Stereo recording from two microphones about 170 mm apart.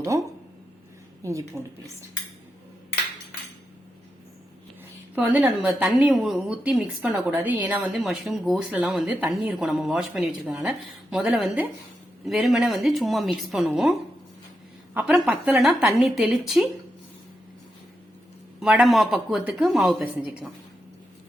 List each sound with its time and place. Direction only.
0.0 s a woman's voice: 20° right (ahead or behind)
5.1 s a woman's voice: 10° right (ahead or behind)
14.9 s a woman's voice: 5° right (ahead or behind)
18.6 s a woman's voice: 5° right (ahead or behind)